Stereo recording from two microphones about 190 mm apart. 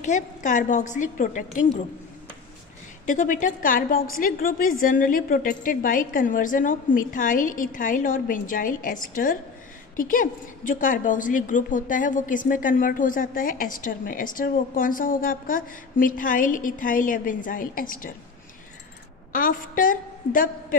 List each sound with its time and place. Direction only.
0.0 s a woman's voice: 40° left (ahead or behind)
3.1 s a woman's voice: 45° left (ahead or behind)
19.3 s a woman's voice: 45° left (ahead or behind)